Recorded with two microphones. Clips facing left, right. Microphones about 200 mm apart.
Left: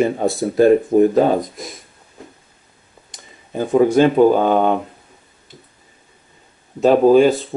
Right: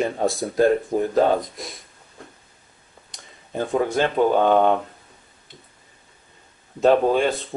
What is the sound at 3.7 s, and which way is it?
Speech, 15° left (ahead or behind).